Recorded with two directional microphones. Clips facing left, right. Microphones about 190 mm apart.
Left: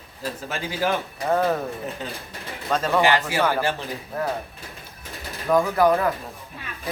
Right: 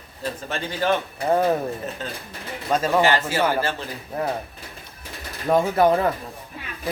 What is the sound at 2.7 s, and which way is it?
Speech, 15° right (ahead or behind).